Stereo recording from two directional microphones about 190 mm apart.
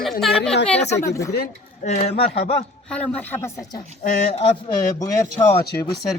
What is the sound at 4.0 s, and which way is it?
Speech, 40° left (ahead or behind).